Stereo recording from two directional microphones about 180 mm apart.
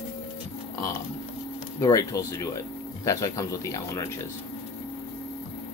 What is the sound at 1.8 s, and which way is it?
Speech, 20° left (ahead or behind).